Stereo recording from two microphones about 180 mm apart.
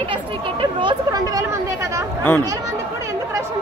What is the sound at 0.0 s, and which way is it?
Chatter, 30° right (ahead or behind).